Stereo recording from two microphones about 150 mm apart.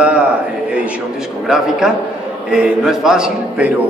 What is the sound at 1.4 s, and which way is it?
A man's voice, 5° right (ahead or behind).